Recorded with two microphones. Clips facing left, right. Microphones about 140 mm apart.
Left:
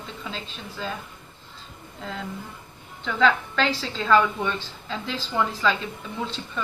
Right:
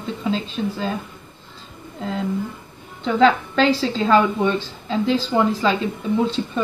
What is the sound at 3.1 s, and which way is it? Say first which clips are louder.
A woman's voice: right 6 dB; 25° right (ahead or behind).